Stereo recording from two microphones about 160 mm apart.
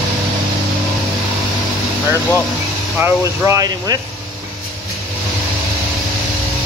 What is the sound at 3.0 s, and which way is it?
Speech, 15° right (ahead or behind).